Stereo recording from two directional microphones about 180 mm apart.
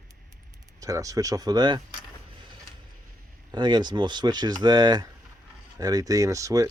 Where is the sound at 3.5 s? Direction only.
25° right (ahead or behind).